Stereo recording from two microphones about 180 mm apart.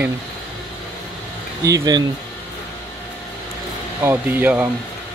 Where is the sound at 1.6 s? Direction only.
20° right (ahead or behind).